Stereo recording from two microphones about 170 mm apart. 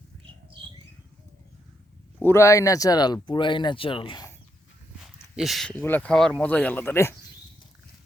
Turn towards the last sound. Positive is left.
turn(degrees=15)  # may be behind; listen again after turning